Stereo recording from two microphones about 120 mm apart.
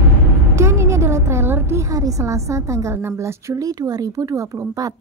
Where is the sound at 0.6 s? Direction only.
25° right (ahead or behind).